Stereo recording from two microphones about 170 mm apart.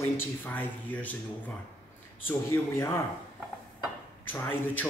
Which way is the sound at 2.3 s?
15° left (ahead or behind).